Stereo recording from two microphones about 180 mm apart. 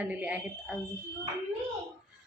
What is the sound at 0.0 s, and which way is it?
Speech, 10° right (ahead or behind).